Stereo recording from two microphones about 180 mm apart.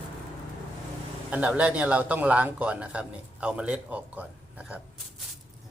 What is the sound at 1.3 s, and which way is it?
A man's voice, 10° right (ahead or behind).